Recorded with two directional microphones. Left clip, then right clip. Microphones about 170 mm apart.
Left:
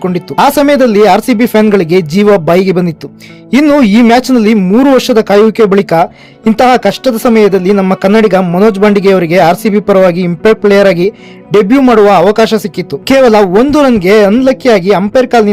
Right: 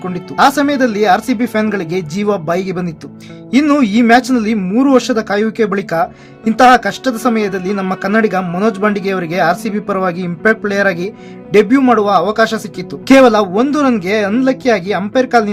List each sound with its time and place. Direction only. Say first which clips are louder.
0.0 s speech: left 3 dB; 50° left (ahead or behind)